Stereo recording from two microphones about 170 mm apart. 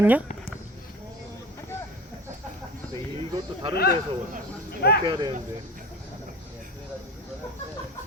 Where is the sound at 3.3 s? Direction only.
30° right (ahead or behind).